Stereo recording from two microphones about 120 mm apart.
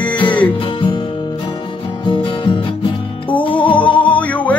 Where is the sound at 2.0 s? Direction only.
40° left (ahead or behind).